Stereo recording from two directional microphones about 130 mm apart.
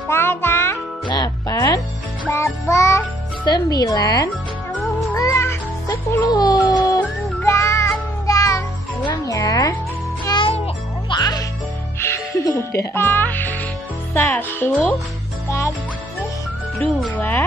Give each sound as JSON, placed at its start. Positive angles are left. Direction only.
{"t": 0.1, "sound": "music", "side_deg": 20}
{"t": 1.0, "sound": "music", "side_deg": 30}
{"t": 3.4, "sound": "a woman's voice", "side_deg": 30}
{"t": 5.1, "sound": "music", "side_deg": 25}
{"t": 12.0, "sound": "music", "side_deg": 20}
{"t": 14.1, "sound": "speech", "side_deg": 15}
{"t": 16.7, "sound": "speech", "side_deg": 0}
{"t": 17.1, "sound": "speech", "side_deg": 15}